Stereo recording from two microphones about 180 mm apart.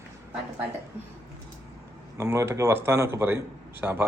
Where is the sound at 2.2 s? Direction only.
15° right (ahead or behind).